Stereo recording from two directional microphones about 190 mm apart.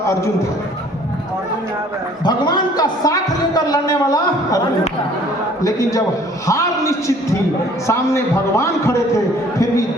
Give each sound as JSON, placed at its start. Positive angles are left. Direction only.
{"t": 2.2, "sound": "a man's voice", "side_deg": 25}
{"t": 6.5, "sound": "a man's voice", "side_deg": 15}